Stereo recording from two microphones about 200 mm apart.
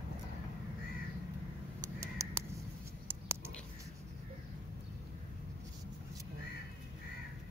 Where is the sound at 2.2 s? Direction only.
15° right (ahead or behind).